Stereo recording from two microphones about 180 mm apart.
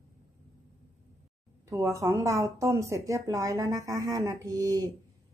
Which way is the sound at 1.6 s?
15° right (ahead or behind).